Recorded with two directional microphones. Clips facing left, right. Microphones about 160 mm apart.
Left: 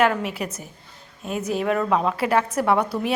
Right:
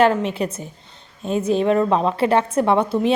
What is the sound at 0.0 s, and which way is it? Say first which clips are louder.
A woman's voice: right 4 dB; 25° right (ahead or behind).